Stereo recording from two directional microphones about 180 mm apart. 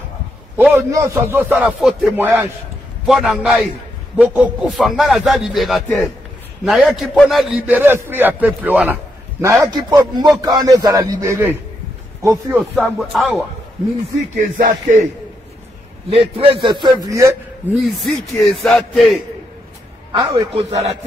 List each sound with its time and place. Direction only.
0.6 s a man's voice: 15° right (ahead or behind)
12.8 s speech: centre (ahead or behind)
14.6 s a man's voice: 45° right (ahead or behind)
16.1 s a man's voice: 30° right (ahead or behind)
17.7 s speech: centre (ahead or behind)
20.1 s a man's voice: 30° right (ahead or behind)